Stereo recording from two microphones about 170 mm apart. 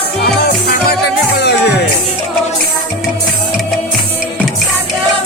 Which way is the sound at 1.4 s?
75° left (ahead or behind).